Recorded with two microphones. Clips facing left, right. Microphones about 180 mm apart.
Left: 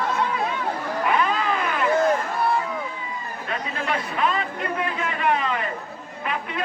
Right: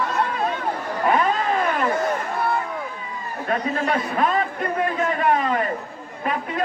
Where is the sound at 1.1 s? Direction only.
40° right (ahead or behind).